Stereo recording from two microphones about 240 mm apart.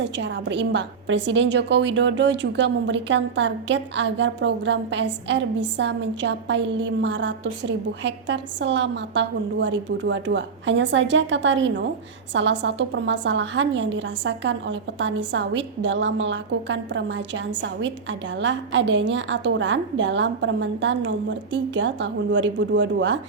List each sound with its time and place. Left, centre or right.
0.0 s a woman's voice: right